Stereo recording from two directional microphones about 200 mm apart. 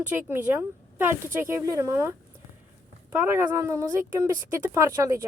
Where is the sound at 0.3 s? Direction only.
10° right (ahead or behind).